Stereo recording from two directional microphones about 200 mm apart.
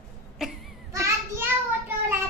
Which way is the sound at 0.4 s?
Centre (ahead or behind).